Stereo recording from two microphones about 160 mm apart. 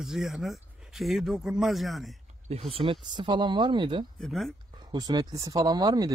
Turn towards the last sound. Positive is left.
turn(degrees=-25)  # may be behind; listen again after turning